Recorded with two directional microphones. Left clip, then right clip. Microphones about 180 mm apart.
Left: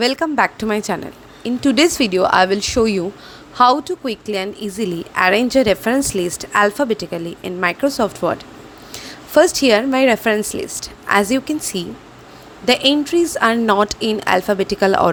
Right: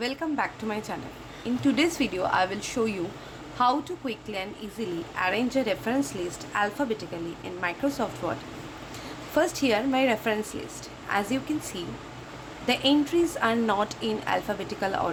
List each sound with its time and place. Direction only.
0.0 s speech: 55° left (ahead or behind)